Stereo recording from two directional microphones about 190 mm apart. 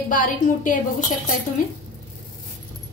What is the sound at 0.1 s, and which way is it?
Speech, 45° left (ahead or behind).